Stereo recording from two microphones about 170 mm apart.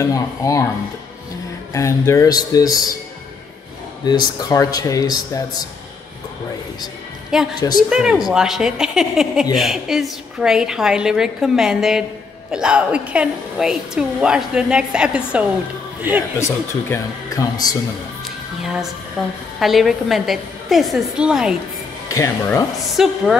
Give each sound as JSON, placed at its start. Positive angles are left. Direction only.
{"t": 0.0, "sound": "speech", "side_deg": 20}
{"t": 1.7, "sound": "speech", "side_deg": 15}
{"t": 4.0, "sound": "speech", "side_deg": 25}
{"t": 7.3, "sound": "a woman's voice", "side_deg": -5}
{"t": 16.3, "sound": "speech", "side_deg": 15}
{"t": 19.2, "sound": "a woman's voice", "side_deg": 0}
{"t": 22.1, "sound": "speech", "side_deg": 20}
{"t": 23.0, "sound": "a woman's voice", "side_deg": -5}